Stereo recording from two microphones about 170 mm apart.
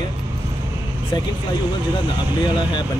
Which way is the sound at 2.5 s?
25° left (ahead or behind).